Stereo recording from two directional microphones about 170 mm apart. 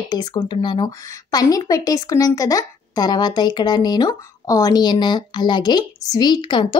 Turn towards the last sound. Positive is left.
turn(degrees=25)  # may be behind; listen again after turning